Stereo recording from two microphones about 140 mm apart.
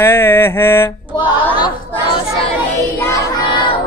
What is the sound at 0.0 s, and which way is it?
Mantra, 15° left (ahead or behind).